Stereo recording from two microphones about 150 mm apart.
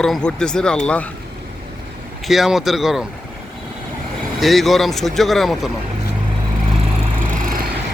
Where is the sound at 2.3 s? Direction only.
Centre (ahead or behind).